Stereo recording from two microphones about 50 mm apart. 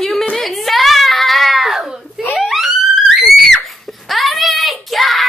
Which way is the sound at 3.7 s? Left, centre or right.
Centre.